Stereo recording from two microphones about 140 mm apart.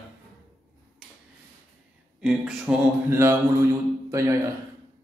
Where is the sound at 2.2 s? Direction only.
5° right (ahead or behind).